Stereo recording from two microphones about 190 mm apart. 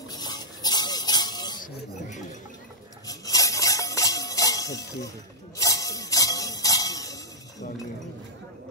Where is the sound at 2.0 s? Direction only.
40° left (ahead or behind).